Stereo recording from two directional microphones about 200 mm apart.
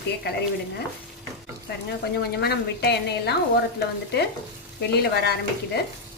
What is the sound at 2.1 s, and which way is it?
Speech, 55° left (ahead or behind).